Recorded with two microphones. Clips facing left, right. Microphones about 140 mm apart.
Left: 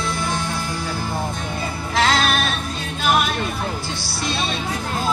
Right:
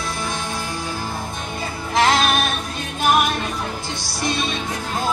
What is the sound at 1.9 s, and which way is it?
Music, 20° right (ahead or behind).